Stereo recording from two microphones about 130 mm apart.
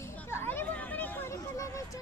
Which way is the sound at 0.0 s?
20° left (ahead or behind).